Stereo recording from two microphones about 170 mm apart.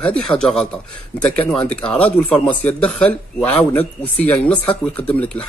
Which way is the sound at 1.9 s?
10° left (ahead or behind).